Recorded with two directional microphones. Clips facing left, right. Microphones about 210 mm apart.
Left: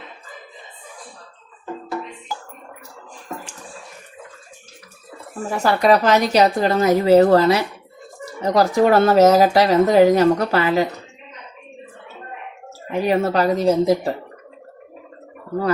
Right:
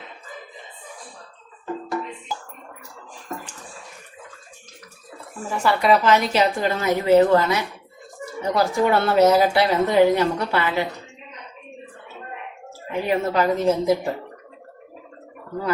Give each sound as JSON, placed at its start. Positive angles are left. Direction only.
{"t": 5.5, "sound": "speech", "side_deg": 40}
{"t": 12.9, "sound": "speech", "side_deg": 35}